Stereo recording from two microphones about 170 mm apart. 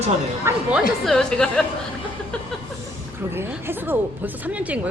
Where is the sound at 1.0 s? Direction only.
5° left (ahead or behind).